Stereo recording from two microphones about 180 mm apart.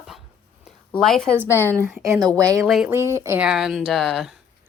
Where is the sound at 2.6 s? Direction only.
5° right (ahead or behind).